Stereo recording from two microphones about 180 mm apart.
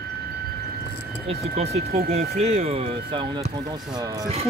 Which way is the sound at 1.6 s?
35° right (ahead or behind).